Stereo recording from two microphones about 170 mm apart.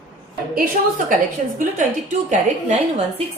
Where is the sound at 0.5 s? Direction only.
55° right (ahead or behind).